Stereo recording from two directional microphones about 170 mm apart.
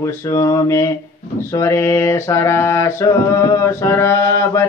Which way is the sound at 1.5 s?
15° left (ahead or behind).